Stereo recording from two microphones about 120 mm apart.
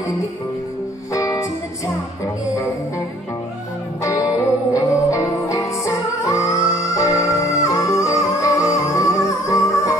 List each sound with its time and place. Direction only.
1.1 s music: 25° left (ahead or behind)
4.0 s music: 25° left (ahead or behind)